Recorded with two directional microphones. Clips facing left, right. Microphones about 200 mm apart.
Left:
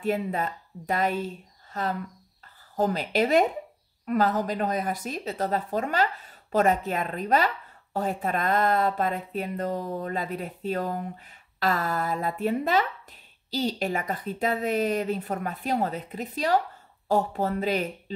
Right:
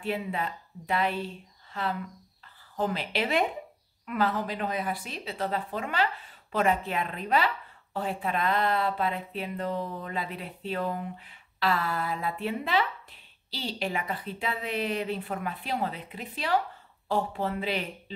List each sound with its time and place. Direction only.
0.0 s speech: 45° left (ahead or behind)